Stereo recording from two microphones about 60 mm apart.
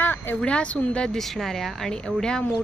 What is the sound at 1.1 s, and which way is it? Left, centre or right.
Speech, centre.